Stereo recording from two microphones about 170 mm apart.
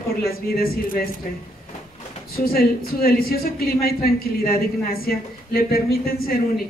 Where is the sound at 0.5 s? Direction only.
60° left (ahead or behind).